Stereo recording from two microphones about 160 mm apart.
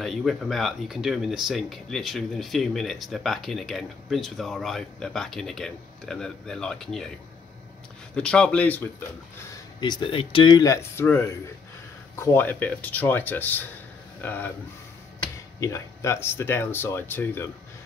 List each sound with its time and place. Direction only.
0.0 s speech: centre (ahead or behind)
8.1 s speech: 5° left (ahead or behind)
9.8 s speech: 25° left (ahead or behind); by 14.5 s 10° left (ahead or behind)
15.6 s speech: 20° left (ahead or behind)